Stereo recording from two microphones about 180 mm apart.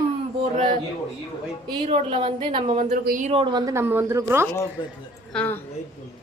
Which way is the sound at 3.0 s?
50° right (ahead or behind).